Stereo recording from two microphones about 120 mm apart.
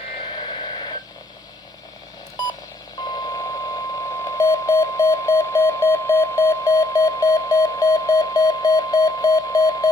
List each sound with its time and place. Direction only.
0.5 s radio: 35° left (ahead or behind)
2.3 s telephone dialing: 30° left (ahead or behind)
3.0 s alarm clock: 35° left (ahead or behind)